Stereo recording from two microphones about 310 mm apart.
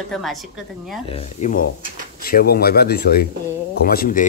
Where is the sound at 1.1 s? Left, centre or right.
Left.